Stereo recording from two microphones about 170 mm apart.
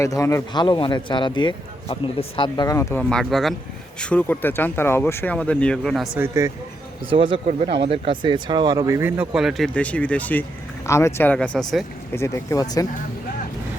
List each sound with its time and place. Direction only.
0.0 s a man's voice: 20° left (ahead or behind)
3.0 s speech: 5° left (ahead or behind)
6.1 s speech: 15° right (ahead or behind)
7.1 s speech: 30° right (ahead or behind); by 11.6 s 5° left (ahead or behind)
12.1 s a man's voice: 15° left (ahead or behind)